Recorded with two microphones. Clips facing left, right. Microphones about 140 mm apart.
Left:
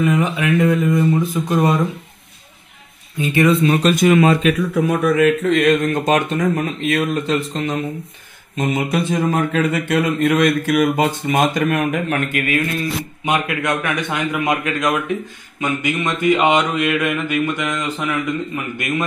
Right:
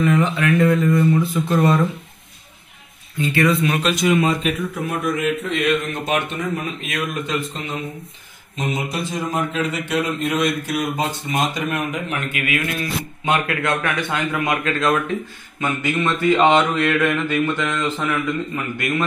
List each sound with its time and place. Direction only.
0.0 s speech: 15° left (ahead or behind)
3.2 s speech: 15° left (ahead or behind)
3.6 s speech: 45° left (ahead or behind); by 5.3 s 85° left
5.4 s speech: 45° left (ahead or behind)
8.5 s speech: 55° left (ahead or behind)
13.2 s speech: 15° left (ahead or behind)